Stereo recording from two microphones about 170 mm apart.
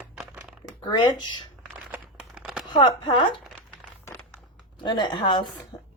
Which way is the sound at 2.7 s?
30° left (ahead or behind).